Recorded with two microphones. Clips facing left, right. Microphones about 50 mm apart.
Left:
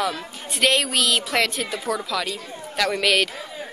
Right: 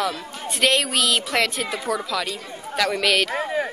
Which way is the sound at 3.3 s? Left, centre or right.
Right.